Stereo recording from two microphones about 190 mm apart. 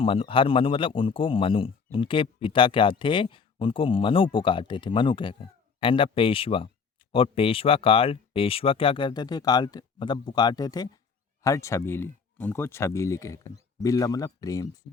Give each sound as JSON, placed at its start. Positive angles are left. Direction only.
{"t": 0.0, "sound": "speech", "side_deg": 30}